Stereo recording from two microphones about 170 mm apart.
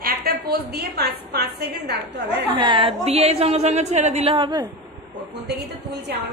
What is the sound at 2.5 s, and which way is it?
A woman's voice, 30° right (ahead or behind).